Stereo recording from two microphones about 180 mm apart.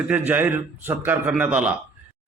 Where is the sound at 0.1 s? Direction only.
10° right (ahead or behind).